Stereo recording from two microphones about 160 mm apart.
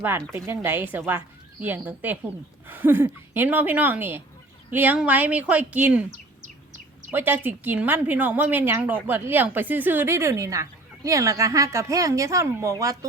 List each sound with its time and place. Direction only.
0.3 s a woman's voice: 15° right (ahead or behind)
7.1 s a woman's voice: 10° right (ahead or behind)